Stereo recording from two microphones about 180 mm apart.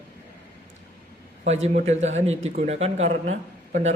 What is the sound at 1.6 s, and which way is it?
Speech, 40° right (ahead or behind).